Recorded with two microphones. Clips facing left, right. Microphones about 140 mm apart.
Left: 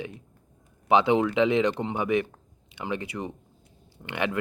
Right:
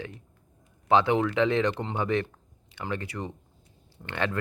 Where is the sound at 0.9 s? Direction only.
15° left (ahead or behind).